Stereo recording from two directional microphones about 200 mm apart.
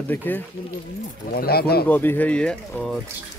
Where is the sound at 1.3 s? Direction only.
50° left (ahead or behind).